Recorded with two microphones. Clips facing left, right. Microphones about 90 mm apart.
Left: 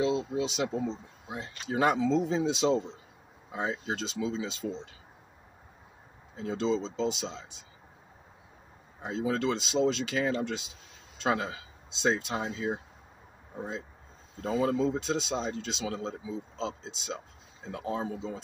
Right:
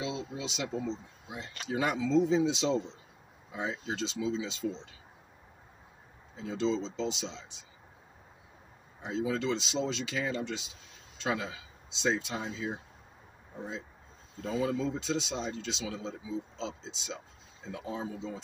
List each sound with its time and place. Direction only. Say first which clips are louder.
0.0 s speech: left 8 dB; 35° left (ahead or behind)
6.3 s speech: left 2 dB; 45° left (ahead or behind)
9.0 s speech: left 2 dB; 45° left (ahead or behind)
14.4 s speech: left 4 dB; 40° left (ahead or behind)